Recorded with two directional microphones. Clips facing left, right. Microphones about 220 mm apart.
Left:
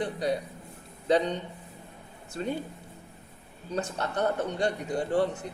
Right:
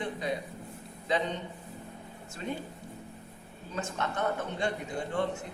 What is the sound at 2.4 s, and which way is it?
Speech, 35° left (ahead or behind).